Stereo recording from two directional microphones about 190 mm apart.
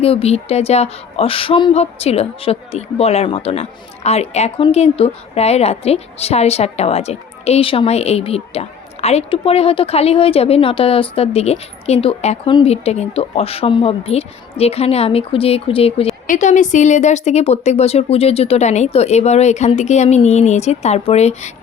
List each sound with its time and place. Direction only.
0.0 s speech: 30° left (ahead or behind)
16.2 s speech: 40° left (ahead or behind)